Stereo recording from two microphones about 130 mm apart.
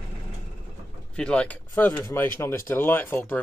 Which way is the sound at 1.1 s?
10° left (ahead or behind).